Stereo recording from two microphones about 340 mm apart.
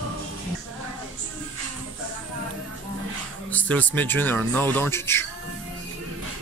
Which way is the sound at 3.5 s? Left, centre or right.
Centre.